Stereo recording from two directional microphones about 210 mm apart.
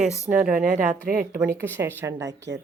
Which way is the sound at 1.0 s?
45° right (ahead or behind).